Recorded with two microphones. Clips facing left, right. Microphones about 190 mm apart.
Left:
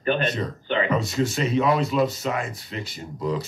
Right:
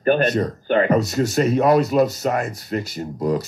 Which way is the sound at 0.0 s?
45° right (ahead or behind).